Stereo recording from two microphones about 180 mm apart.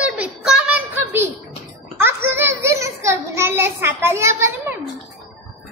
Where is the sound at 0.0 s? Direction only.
5° right (ahead or behind).